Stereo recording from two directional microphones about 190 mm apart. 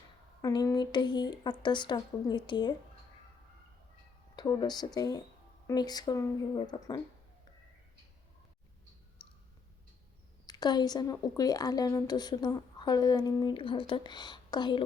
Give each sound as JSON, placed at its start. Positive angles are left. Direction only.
{"t": 0.4, "sound": "speech", "side_deg": 20}
{"t": 4.4, "sound": "speech", "side_deg": 20}
{"t": 9.2, "sound": "clicking", "side_deg": 25}
{"t": 10.4, "sound": "speech", "side_deg": 20}